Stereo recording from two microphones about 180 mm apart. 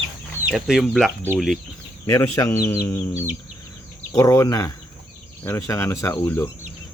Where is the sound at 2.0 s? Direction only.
15° left (ahead or behind).